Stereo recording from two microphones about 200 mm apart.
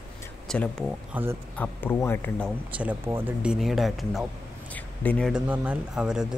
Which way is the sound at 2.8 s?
10° right (ahead or behind).